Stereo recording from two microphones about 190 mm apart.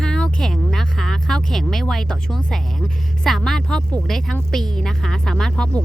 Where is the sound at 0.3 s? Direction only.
Centre (ahead or behind).